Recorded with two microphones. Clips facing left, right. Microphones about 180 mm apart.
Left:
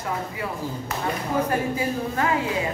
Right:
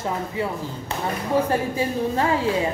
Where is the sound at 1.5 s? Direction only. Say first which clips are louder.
Right 1 dB; 30° right (ahead or behind).